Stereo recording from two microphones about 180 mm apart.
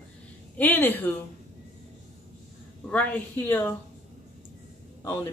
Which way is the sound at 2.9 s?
10° left (ahead or behind).